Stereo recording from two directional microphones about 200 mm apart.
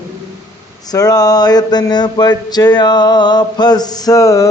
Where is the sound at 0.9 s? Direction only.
20° left (ahead or behind).